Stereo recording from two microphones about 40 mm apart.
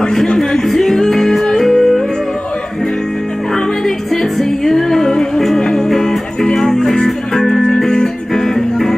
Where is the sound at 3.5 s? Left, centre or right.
Centre.